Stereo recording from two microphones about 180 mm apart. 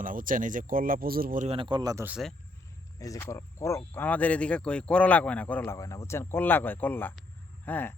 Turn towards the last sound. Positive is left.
turn(degrees=10)  # may be behind; listen again after turning